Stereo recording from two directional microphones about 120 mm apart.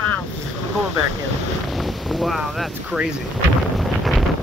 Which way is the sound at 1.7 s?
Centre (ahead or behind).